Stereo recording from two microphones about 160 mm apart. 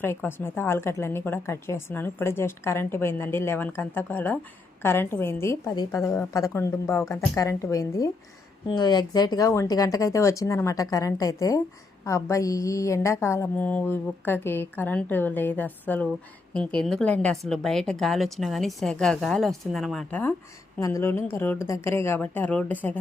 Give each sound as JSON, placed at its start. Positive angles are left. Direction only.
{"t": 0.0, "sound": "a woman's voice", "side_deg": 15}